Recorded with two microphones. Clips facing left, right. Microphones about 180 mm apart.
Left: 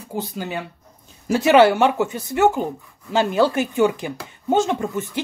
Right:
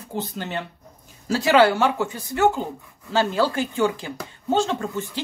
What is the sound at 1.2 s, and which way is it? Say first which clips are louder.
Speech: left 3 dB; 20° left (ahead or behind).